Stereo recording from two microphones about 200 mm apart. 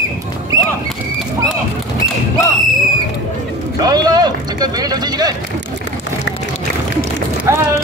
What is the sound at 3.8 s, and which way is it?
Vehicle, 20° right (ahead or behind).